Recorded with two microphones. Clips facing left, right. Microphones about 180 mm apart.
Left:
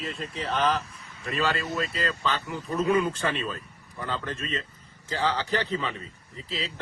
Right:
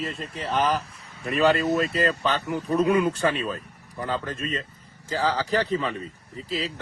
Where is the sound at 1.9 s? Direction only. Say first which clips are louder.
Right 7 dB; 55° right (ahead or behind).